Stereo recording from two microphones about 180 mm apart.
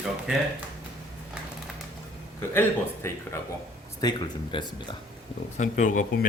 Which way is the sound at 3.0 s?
15° left (ahead or behind).